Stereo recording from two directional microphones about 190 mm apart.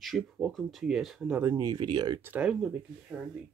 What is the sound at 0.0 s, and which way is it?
Speech, centre (ahead or behind).